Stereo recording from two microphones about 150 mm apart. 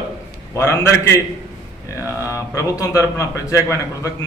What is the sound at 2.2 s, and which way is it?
Speech, 20° left (ahead or behind).